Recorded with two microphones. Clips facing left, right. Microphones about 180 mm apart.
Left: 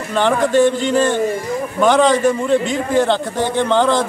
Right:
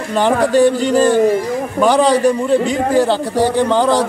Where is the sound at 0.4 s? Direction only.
40° right (ahead or behind).